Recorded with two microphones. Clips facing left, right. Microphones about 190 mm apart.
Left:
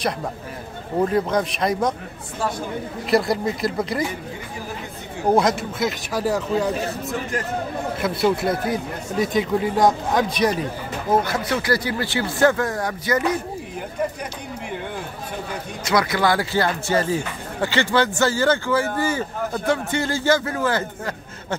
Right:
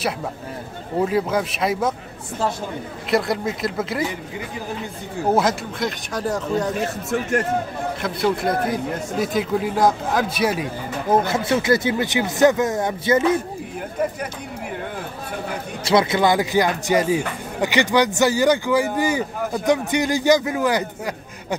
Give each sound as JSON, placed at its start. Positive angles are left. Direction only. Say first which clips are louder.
{"t": 1.0, "sound": "a man's voice", "louder": "left 1 dB", "side_deg": -5}
{"t": 3.1, "sound": "a man's voice", "louder": "left 1 dB", "side_deg": 0}
{"t": 5.3, "sound": "a man's voice", "louder": "left 2 dB", "side_deg": 0}
{"t": 8.0, "sound": "a man's voice", "louder": "left 1 dB", "side_deg": 0}
{"t": 11.2, "sound": "speech", "louder": "right 3 dB", "side_deg": -25}
{"t": 15.8, "sound": "a man's voice", "louder": "right 3 dB", "side_deg": -25}